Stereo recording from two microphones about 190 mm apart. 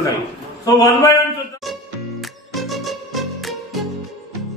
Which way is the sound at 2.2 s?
Centre (ahead or behind).